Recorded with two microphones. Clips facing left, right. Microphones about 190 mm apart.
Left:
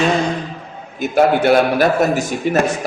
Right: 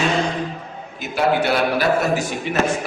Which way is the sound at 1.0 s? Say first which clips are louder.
Left 5 dB; 50° left (ahead or behind).